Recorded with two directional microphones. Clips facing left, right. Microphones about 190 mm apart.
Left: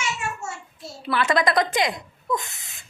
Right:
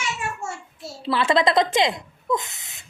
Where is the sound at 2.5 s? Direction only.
20° right (ahead or behind).